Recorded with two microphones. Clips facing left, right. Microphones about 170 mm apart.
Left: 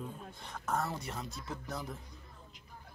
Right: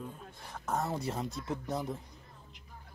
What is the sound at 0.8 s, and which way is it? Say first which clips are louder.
Speech: right 5 dB; 30° right (ahead or behind).